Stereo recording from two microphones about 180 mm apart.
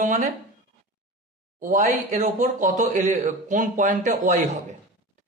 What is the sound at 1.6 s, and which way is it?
A man's voice, 45° right (ahead or behind).